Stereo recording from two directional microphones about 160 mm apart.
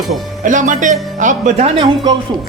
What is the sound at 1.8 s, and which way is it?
Speech, 25° right (ahead or behind).